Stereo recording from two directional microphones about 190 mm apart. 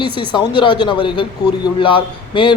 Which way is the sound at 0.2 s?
25° left (ahead or behind).